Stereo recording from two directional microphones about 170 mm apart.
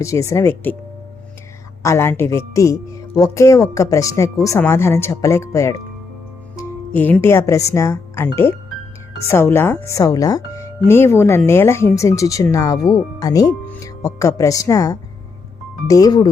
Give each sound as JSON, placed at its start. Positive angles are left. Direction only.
{"t": 0.0, "sound": "speech", "side_deg": 20}
{"t": 1.8, "sound": "speech", "side_deg": 15}